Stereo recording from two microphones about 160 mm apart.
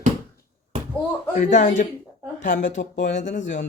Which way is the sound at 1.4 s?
50° left (ahead or behind).